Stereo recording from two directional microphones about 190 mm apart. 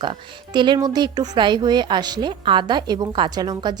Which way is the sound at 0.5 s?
25° right (ahead or behind).